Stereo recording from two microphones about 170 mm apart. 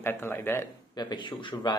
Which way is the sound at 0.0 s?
15° left (ahead or behind).